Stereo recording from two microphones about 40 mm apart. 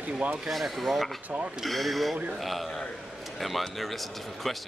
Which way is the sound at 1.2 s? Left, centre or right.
Right.